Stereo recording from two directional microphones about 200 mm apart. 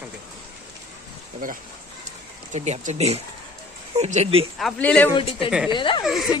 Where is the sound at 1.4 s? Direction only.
45° right (ahead or behind).